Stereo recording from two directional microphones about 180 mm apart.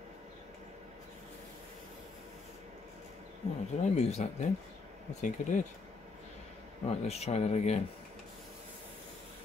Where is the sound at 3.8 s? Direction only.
40° left (ahead or behind).